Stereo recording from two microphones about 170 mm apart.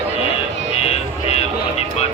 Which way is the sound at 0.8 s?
35° left (ahead or behind).